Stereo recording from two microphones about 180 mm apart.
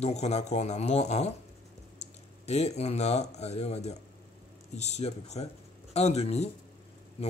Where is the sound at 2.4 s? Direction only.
35° left (ahead or behind).